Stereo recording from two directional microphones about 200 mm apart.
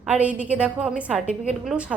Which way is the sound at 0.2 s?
5° right (ahead or behind).